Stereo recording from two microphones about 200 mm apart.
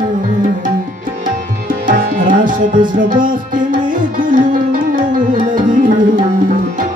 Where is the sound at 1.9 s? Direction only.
40° right (ahead or behind).